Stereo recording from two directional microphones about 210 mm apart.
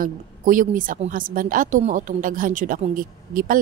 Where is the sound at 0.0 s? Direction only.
40° right (ahead or behind).